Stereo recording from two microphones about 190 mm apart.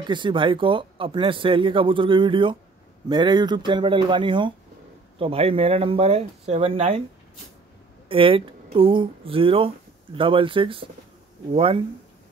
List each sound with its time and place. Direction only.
0.0 s speech: 25° right (ahead or behind)
8.1 s speech: 30° right (ahead or behind)